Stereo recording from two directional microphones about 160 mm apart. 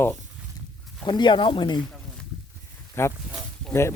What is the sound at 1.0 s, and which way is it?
Speech, 25° left (ahead or behind).